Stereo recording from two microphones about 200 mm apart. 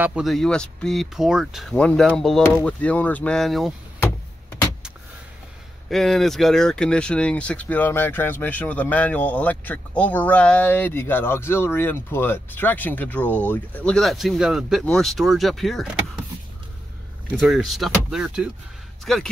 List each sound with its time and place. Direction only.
0.0 s speech: 5° right (ahead or behind)
5.9 s speech: centre (ahead or behind)
17.4 s speech: centre (ahead or behind)